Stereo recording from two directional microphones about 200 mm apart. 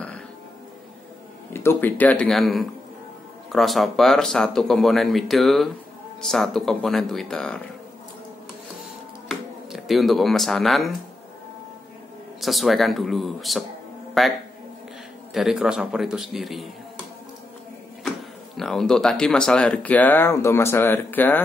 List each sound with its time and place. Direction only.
1.5 s speech: 10° left (ahead or behind)
9.3 s speech: centre (ahead or behind)
12.4 s speech: centre (ahead or behind)
15.3 s speech: 5° right (ahead or behind)
18.6 s speech: centre (ahead or behind)